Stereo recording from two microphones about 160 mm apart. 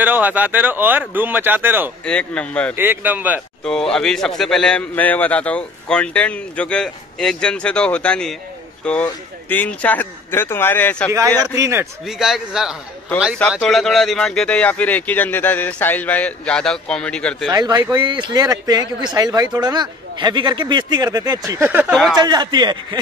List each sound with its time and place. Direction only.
0.0 s speech: 10° right (ahead or behind)
2.0 s speech: 5° left (ahead or behind)
2.7 s speech: 10° right (ahead or behind)
3.6 s a man's voice: 5° left (ahead or behind)
11.5 s speech: 20° right (ahead or behind)
12.0 s a man's voice: centre (ahead or behind)
17.5 s speech: 25° right (ahead or behind)
21.5 s speech: 15° right (ahead or behind)
22.1 s speech: 25° right (ahead or behind)